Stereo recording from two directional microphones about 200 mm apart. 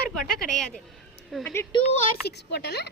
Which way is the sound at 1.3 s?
Centre (ahead or behind).